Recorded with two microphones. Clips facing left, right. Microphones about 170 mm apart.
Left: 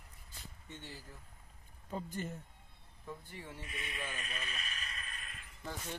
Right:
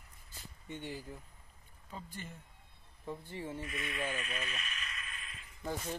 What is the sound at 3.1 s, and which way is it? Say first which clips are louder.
Speech: right 6 dB; 25° right (ahead or behind).